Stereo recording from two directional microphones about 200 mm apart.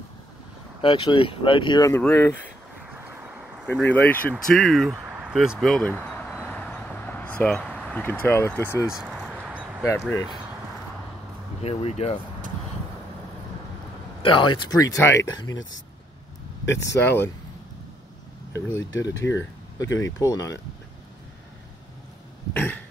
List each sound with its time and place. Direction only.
0.8 s speech: 25° left (ahead or behind); by 2.5 s 10° left (ahead or behind)
3.0 s vehicle: 10° right (ahead or behind)
3.8 s speech: 10° left (ahead or behind)
5.9 s a sound: centre (ahead or behind)
8.8 s a sound: 5° right (ahead or behind)
9.8 s speech: 15° left (ahead or behind)
11.6 s speech: 30° left (ahead or behind)
14.2 s speech: 25° left (ahead or behind)
16.6 s speech: 60° left (ahead or behind)
17.0 s speech: 10° left (ahead or behind)
18.9 s speech: 65° left (ahead or behind)
20.2 s speech: 15° left (ahead or behind)
22.5 s cough: 10° left (ahead or behind)